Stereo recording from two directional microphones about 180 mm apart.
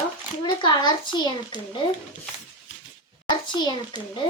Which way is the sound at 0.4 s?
25° left (ahead or behind).